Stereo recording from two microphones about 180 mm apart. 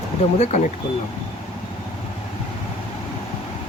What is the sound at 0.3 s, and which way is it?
Speech, 40° left (ahead or behind).